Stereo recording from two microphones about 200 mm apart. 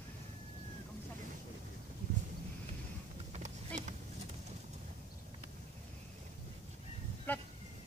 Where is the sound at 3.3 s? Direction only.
35° right (ahead or behind).